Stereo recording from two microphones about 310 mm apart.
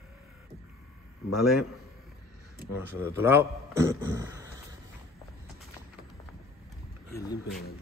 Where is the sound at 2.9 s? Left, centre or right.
Centre.